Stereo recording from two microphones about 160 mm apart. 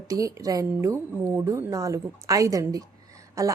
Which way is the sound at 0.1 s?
20° right (ahead or behind).